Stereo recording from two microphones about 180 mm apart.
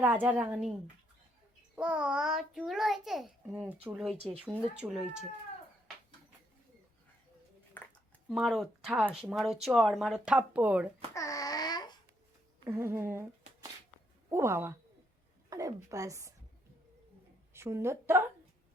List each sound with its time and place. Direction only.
0.0 s a woman's voice: 10° right (ahead or behind)
7.8 s a sound: 10° left (ahead or behind)
8.3 s a child's voice: centre (ahead or behind)
11.1 s babbling: 15° left (ahead or behind)
12.6 s a woman's voice: 15° right (ahead or behind)
14.3 s a woman's voice: 15° right (ahead or behind)
17.5 s a woman's voice: 15° right (ahead or behind)